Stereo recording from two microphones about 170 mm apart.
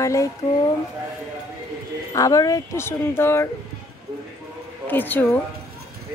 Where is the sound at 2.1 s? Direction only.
20° left (ahead or behind).